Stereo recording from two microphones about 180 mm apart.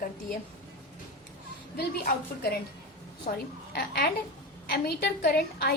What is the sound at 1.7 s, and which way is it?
A woman's voice, 60° left (ahead or behind).